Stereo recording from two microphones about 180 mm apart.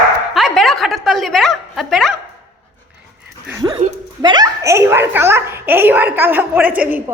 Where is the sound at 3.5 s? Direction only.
20° right (ahead or behind).